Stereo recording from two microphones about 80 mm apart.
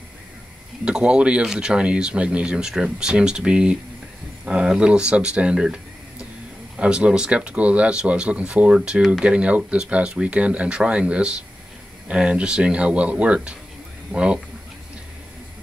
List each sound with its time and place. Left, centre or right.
0.8 s speech: centre
6.8 s speech: centre